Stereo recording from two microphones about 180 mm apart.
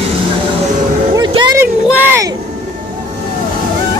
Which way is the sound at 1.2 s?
25° right (ahead or behind).